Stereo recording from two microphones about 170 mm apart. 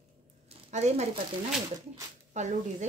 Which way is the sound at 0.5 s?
40° right (ahead or behind).